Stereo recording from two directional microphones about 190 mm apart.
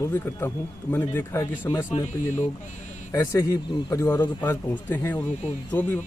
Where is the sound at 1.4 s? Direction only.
20° left (ahead or behind).